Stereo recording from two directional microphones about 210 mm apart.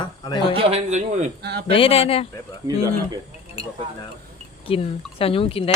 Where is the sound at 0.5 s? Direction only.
25° right (ahead or behind).